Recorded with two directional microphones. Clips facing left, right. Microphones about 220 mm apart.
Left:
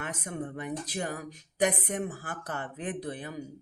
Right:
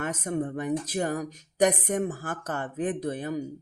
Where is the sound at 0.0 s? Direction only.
45° right (ahead or behind).